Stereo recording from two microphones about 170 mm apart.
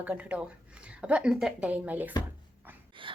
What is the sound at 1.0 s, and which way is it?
Speech, 5° right (ahead or behind).